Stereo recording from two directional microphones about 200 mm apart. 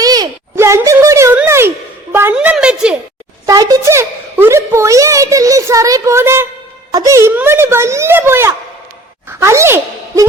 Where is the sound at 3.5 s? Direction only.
15° right (ahead or behind).